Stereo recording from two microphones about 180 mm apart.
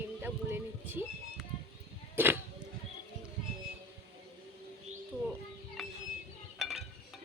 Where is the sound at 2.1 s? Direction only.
10° right (ahead or behind).